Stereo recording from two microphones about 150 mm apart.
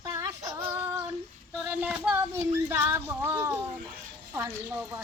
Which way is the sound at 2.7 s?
10° right (ahead or behind).